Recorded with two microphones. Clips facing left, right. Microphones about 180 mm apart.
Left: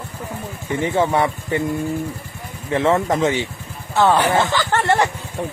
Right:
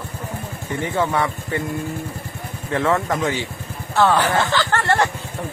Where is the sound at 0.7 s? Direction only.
20° left (ahead or behind).